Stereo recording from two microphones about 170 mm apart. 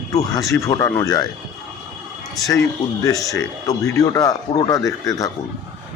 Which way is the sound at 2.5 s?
20° left (ahead or behind).